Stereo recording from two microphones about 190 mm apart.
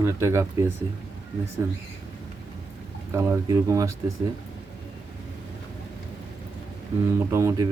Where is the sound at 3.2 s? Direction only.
15° right (ahead or behind).